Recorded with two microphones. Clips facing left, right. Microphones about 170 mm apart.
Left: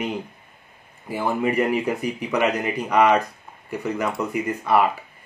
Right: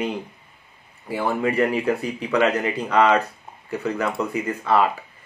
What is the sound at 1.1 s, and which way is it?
Speech, 15° left (ahead or behind).